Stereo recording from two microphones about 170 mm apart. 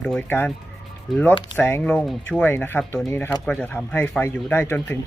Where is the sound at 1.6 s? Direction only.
10° left (ahead or behind).